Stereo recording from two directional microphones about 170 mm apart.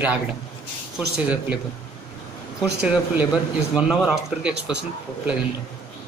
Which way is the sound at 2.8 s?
5° right (ahead or behind).